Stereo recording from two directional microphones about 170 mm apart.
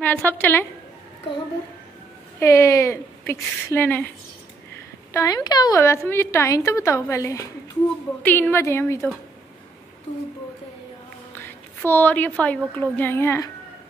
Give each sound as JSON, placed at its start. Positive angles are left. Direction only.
{"t": 0.0, "sound": "a woman's voice", "side_deg": 10}
{"t": 2.4, "sound": "a woman's voice", "side_deg": 15}
{"t": 5.1, "sound": "a woman's voice", "side_deg": 20}
{"t": 11.3, "sound": "a woman's voice", "side_deg": 15}